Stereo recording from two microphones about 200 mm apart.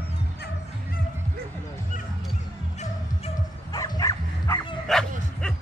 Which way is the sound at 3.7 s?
20° left (ahead or behind).